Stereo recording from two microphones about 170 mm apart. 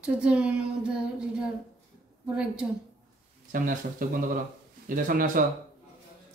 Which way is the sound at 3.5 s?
55° right (ahead or behind).